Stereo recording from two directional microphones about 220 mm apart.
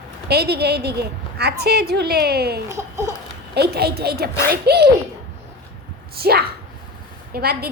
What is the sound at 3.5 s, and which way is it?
A woman's voice, 45° right (ahead or behind).